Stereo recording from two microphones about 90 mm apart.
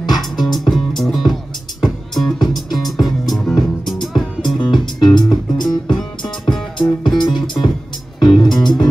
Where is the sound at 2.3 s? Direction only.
50° left (ahead or behind).